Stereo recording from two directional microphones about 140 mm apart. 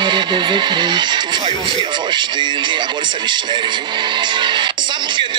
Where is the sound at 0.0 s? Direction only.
35° right (ahead or behind).